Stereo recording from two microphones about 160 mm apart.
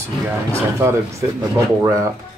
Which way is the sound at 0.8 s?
15° right (ahead or behind).